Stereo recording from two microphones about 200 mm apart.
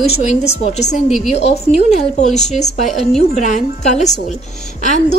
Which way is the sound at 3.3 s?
35° left (ahead or behind).